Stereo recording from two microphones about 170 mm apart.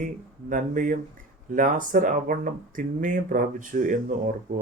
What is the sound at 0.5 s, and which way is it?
Speech, 50° right (ahead or behind).